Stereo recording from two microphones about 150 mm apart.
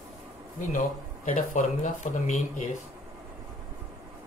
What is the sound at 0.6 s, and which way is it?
Speech, 60° left (ahead or behind).